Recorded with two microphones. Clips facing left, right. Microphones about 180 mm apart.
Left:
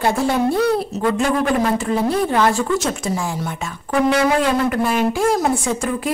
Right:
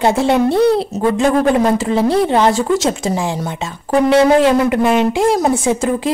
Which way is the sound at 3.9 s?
25° right (ahead or behind).